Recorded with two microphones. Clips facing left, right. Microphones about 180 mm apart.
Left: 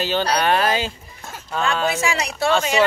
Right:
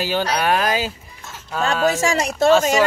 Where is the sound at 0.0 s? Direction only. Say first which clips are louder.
Even; 10° right (ahead or behind).